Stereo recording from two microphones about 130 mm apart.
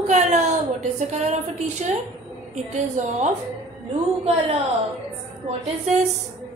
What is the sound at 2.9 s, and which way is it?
Female singing, 65° right (ahead or behind).